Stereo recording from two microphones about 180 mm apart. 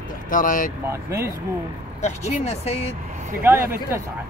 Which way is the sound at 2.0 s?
35° left (ahead or behind).